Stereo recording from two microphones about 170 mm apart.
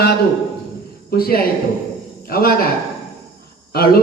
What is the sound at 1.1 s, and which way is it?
Speech, 60° left (ahead or behind).